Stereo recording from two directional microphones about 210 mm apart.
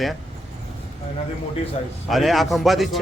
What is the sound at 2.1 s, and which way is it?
Speech, centre (ahead or behind).